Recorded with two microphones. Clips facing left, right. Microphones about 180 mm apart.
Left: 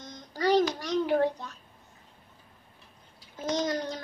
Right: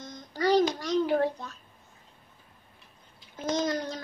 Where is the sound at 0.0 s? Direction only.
20° left (ahead or behind).